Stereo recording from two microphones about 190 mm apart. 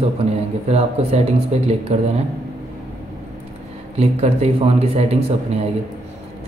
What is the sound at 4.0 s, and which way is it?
Speech, 35° right (ahead or behind).